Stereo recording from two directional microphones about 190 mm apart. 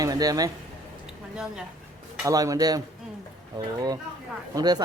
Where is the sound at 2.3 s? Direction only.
20° right (ahead or behind).